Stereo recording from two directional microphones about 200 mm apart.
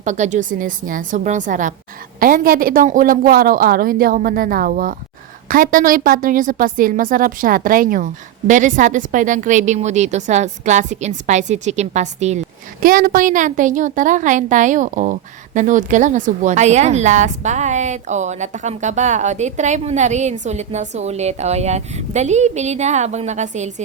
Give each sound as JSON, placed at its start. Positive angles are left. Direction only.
{"t": 0.0, "sound": "a woman's voice", "side_deg": -35}
{"t": 12.8, "sound": "a woman's voice", "side_deg": -45}